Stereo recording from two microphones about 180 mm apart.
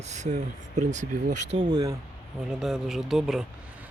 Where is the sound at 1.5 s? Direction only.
20° right (ahead or behind).